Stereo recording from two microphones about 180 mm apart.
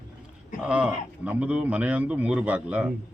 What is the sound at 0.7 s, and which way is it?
Speech, 5° right (ahead or behind).